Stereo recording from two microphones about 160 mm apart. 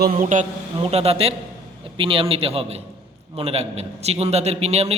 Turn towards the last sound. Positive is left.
turn(degrees=-40)  # may be behind; listen again after turning